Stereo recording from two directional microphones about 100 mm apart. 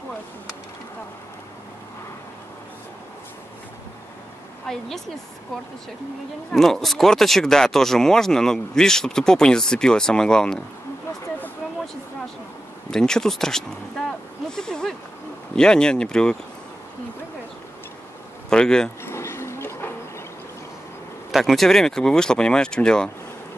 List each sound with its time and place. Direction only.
4.6 s speech: 5° left (ahead or behind)
6.5 s speech: centre (ahead or behind)
12.9 s speech: 5° left (ahead or behind)
18.5 s speech: 5° left (ahead or behind)
19.0 s a sound: 25° left (ahead or behind)
21.3 s speech: centre (ahead or behind)